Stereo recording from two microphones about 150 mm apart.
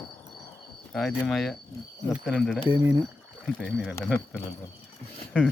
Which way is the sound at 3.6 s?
5° left (ahead or behind).